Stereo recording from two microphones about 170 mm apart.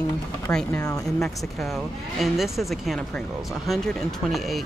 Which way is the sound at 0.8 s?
20° left (ahead or behind).